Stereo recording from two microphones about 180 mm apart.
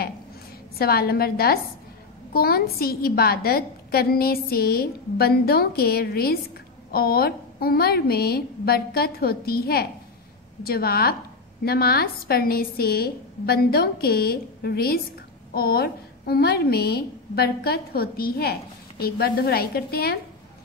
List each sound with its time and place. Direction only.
0.7 s a woman's voice: 60° left (ahead or behind)